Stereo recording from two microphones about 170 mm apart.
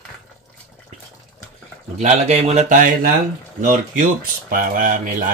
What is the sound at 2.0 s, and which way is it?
Speech, 40° right (ahead or behind).